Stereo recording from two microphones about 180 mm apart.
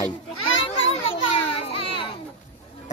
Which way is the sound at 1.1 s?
30° left (ahead or behind).